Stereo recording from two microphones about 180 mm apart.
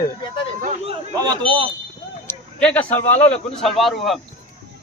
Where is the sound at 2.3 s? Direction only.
5° left (ahead or behind).